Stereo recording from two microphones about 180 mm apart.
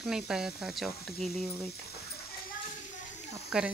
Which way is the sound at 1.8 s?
60° left (ahead or behind).